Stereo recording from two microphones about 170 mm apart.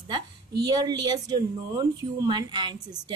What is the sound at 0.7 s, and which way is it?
A woman's voice, 25° right (ahead or behind).